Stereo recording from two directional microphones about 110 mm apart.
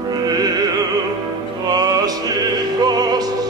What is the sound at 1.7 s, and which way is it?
Music, 35° right (ahead or behind).